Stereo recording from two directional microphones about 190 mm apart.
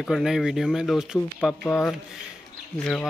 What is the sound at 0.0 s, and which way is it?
Speech, centre (ahead or behind).